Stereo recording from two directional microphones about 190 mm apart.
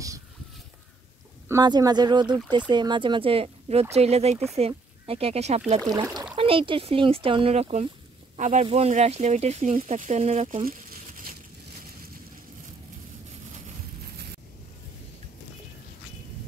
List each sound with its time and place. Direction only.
1.5 s speech: 20° right (ahead or behind)
5.9 s speech: 20° right (ahead or behind)
10.6 s crumpling: 50° right (ahead or behind)